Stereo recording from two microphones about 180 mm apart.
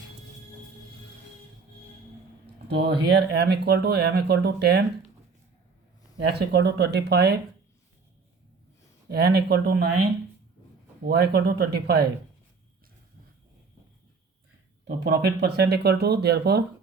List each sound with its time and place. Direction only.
2.6 s speech: 65° right (ahead or behind)
6.2 s speech: 65° right (ahead or behind)
9.0 s speech: 65° right (ahead or behind)
15.0 s speech: 65° right (ahead or behind)